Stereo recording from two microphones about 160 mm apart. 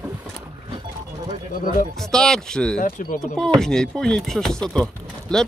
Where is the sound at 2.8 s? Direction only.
55° left (ahead or behind).